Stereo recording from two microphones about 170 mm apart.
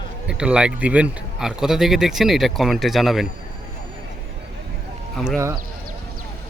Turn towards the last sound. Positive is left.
turn(degrees=-15)  # may be behind; listen again after turning